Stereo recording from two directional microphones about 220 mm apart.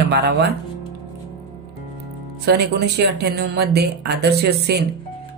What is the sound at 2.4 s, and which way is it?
Speech, 50° right (ahead or behind).